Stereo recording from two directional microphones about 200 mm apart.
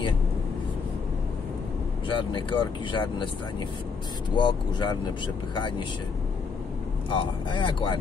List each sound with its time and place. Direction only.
2.0 s speech: 25° left (ahead or behind)
4.4 s speech: 25° left (ahead or behind)
7.1 s speech: 25° left (ahead or behind)